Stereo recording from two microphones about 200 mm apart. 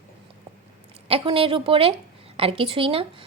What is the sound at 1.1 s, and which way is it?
A woman's voice, 25° right (ahead or behind).